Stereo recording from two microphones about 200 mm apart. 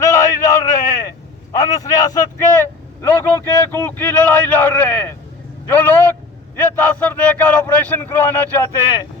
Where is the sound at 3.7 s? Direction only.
10° left (ahead or behind).